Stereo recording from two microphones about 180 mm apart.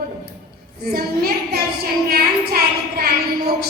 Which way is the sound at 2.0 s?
60° right (ahead or behind).